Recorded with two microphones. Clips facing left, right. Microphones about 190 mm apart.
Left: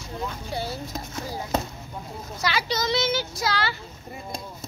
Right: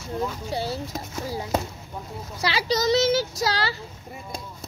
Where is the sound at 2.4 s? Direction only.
30° right (ahead or behind).